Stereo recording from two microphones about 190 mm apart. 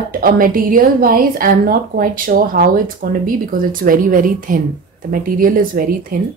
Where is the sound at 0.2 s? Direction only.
45° right (ahead or behind).